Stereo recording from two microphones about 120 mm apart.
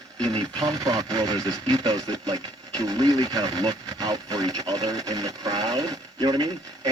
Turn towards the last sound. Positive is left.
turn(degrees=-30)  # may be behind; listen again after turning